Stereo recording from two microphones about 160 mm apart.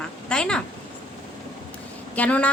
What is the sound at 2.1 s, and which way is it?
Speech, 10° left (ahead or behind).